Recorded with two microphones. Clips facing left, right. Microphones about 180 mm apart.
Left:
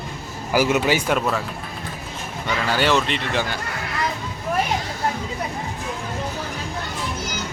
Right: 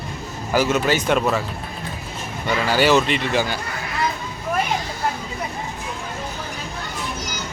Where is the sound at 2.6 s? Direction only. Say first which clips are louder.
Right 3 dB; 5° right (ahead or behind).